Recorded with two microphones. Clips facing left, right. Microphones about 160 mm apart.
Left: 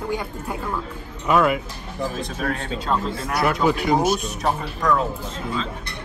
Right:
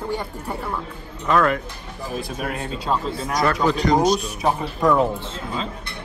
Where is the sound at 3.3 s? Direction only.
10° left (ahead or behind).